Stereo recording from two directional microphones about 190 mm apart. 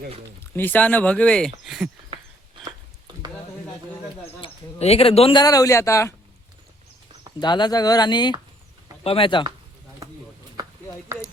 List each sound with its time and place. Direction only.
0.5 s speech: 10° left (ahead or behind)
4.4 s speech: 30° left (ahead or behind)
7.3 s speech: 25° left (ahead or behind)